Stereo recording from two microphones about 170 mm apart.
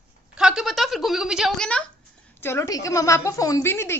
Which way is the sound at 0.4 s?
5° right (ahead or behind).